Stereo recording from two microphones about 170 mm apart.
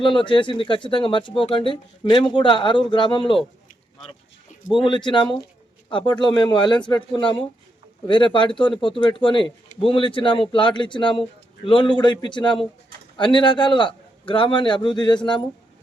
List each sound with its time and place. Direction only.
0.0 s a man's voice: 30° left (ahead or behind)
4.7 s a man's voice: 25° left (ahead or behind)